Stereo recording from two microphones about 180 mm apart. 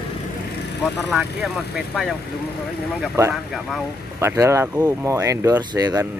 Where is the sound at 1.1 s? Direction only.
5° right (ahead or behind).